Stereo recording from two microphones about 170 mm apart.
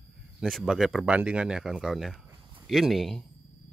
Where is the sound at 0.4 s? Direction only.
Centre (ahead or behind).